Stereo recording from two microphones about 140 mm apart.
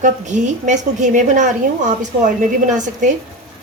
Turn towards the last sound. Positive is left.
turn(degrees=-60)  # may be behind; listen again after turning